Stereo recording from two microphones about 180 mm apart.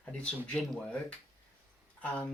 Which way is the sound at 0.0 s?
5° left (ahead or behind).